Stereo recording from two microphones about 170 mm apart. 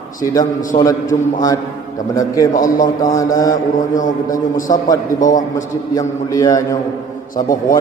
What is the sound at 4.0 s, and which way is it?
Speech, 50° left (ahead or behind).